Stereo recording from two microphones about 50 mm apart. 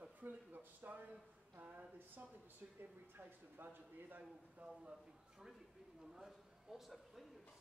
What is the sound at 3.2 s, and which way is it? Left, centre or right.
A man's voice, right.